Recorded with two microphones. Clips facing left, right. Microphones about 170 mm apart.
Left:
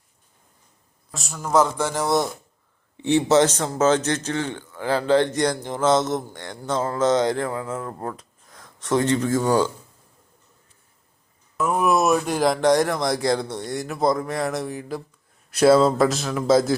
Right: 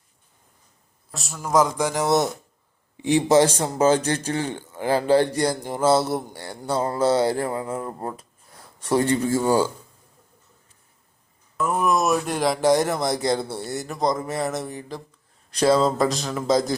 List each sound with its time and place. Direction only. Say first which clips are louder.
1.1 s a man's voice: left 1 dB; centre (ahead or behind)
11.5 s speech: left 2 dB; centre (ahead or behind)